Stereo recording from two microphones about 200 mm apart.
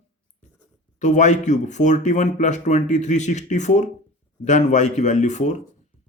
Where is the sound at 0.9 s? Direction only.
35° left (ahead or behind).